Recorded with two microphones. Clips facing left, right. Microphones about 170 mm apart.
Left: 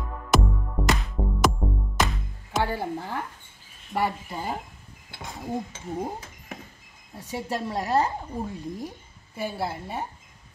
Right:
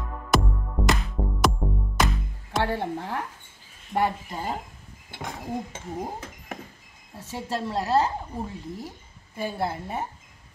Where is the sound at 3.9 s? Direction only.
25° right (ahead or behind).